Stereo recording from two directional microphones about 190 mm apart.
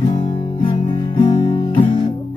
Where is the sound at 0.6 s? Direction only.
25° left (ahead or behind).